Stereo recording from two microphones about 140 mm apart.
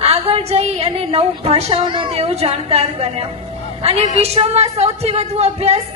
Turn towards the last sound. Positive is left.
turn(degrees=-50)  # may be behind; listen again after turning